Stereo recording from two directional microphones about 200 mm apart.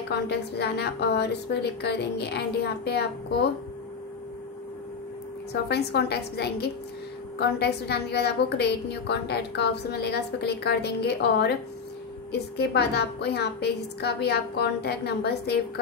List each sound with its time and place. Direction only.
0.1 s a woman's voice: 55° left (ahead or behind)
5.5 s a woman's voice: 55° left (ahead or behind)